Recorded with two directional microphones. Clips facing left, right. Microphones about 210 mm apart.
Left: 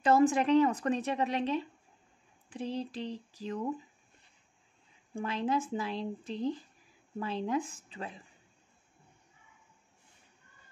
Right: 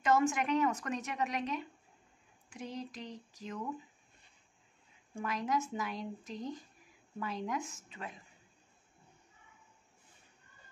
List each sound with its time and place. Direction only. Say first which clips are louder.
0.0 s a woman's voice: left 5 dB; 35° left (ahead or behind)
5.1 s a woman's voice: left 3 dB; 30° left (ahead or behind)